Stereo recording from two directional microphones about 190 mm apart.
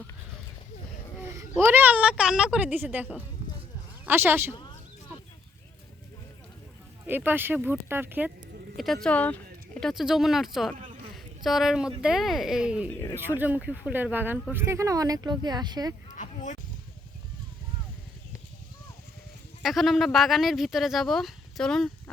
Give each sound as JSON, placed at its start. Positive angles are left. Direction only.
{"t": 1.2, "sound": "a woman's voice", "side_deg": -10}
{"t": 7.0, "sound": "speech", "side_deg": -10}
{"t": 8.7, "sound": "speech", "side_deg": 0}
{"t": 16.1, "sound": "a sound", "side_deg": 40}
{"t": 19.6, "sound": "speech", "side_deg": 0}